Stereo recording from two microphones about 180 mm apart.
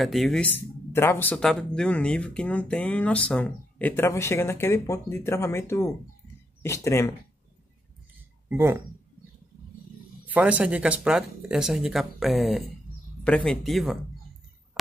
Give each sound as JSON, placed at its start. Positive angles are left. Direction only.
{"t": 0.0, "sound": "speech", "side_deg": 0}
{"t": 8.5, "sound": "speech", "side_deg": -15}
{"t": 10.2, "sound": "speech", "side_deg": -10}